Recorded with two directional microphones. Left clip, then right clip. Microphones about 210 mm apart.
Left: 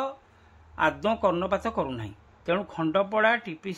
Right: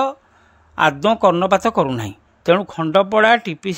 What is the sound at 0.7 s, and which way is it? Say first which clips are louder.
Speech: right 10 dB; 45° right (ahead or behind).